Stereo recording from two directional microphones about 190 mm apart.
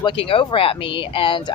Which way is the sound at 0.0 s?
30° left (ahead or behind).